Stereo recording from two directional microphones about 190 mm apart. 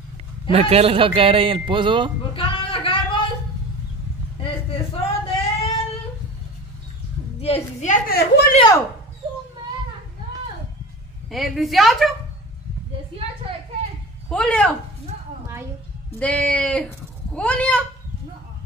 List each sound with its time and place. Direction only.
0.5 s a man's voice: 30° right (ahead or behind)
2.3 s a sound: 25° left (ahead or behind)
4.4 s a sound: 30° left (ahead or behind)
7.3 s a woman's voice: 30° left (ahead or behind)
8.5 s speech: 20° left (ahead or behind)
11.2 s a woman's voice: centre (ahead or behind)
14.3 s a woman's voice: 5° left (ahead or behind)
16.2 s a woman's voice: 5° left (ahead or behind)